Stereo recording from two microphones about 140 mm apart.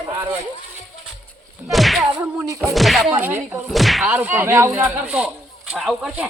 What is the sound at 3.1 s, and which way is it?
Speech, 15° right (ahead or behind).